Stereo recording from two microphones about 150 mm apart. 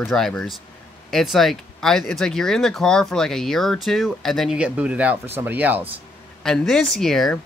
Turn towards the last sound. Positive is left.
turn(degrees=0)  # may be behind; listen again after turning